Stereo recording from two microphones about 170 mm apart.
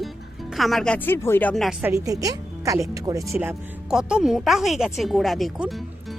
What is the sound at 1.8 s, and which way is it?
Speech, 15° right (ahead or behind).